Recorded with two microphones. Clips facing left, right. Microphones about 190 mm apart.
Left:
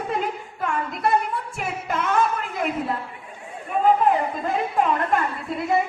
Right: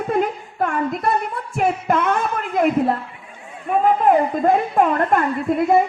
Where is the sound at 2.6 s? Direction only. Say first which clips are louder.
Right 11 dB; 50° right (ahead or behind).